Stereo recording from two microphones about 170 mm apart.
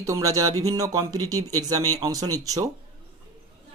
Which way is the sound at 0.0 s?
20° right (ahead or behind).